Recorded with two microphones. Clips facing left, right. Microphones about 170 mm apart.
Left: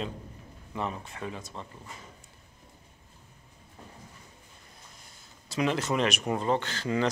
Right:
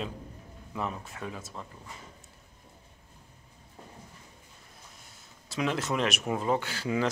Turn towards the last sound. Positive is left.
turn(degrees=-5)  # may be behind; listen again after turning